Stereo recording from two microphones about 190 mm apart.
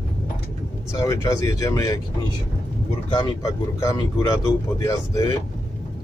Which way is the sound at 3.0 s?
25° left (ahead or behind).